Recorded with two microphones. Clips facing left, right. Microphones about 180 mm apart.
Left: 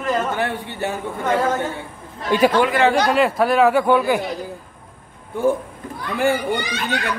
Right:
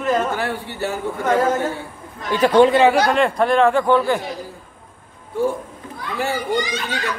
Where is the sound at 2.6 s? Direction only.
25° right (ahead or behind).